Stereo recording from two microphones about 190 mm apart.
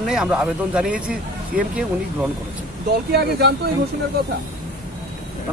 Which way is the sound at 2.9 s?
55° right (ahead or behind).